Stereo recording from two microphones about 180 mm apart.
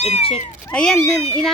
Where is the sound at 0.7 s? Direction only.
5° left (ahead or behind).